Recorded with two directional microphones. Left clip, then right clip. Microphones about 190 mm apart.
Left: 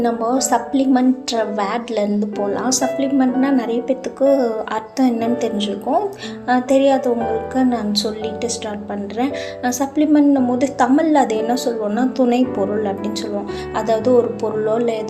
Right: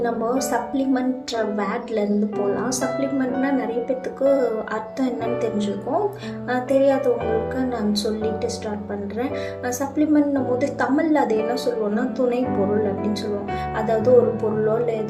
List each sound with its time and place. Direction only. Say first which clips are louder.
0.0 s a woman's voice: left 4 dB; 30° left (ahead or behind)
13.7 s a woman's voice: left 4 dB; 35° left (ahead or behind)